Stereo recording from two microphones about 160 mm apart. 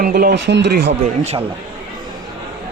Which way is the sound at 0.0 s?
75° right (ahead or behind).